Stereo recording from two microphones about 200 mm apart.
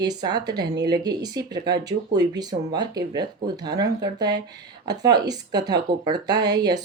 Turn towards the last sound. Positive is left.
turn(degrees=-20)  # may be behind; listen again after turning